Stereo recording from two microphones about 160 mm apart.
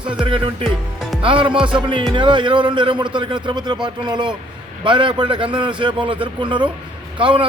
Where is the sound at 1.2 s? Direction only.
35° right (ahead or behind).